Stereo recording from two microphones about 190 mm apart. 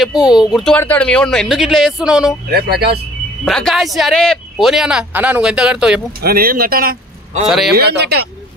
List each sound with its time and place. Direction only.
0.0 s speech: 5° right (ahead or behind)
2.5 s speech: 55° right (ahead or behind)
3.4 s speech: centre (ahead or behind)
6.2 s speech: 50° right (ahead or behind)
7.4 s speech: centre (ahead or behind)
7.7 s speech: 60° right (ahead or behind)